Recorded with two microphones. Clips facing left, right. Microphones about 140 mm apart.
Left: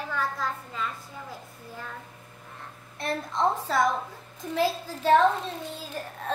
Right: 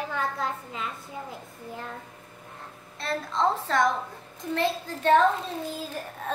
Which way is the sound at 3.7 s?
5° left (ahead or behind).